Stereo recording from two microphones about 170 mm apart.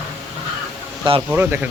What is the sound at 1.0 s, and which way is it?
Speech, 30° right (ahead or behind).